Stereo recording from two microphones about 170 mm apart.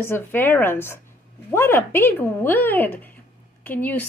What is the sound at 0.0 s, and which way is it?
Speech, 15° left (ahead or behind).